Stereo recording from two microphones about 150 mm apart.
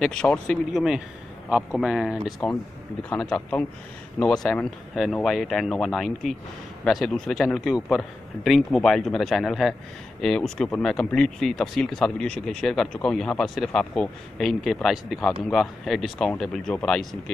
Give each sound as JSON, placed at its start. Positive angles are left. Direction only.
{"t": 0.0, "sound": "a man's voice", "side_deg": 5}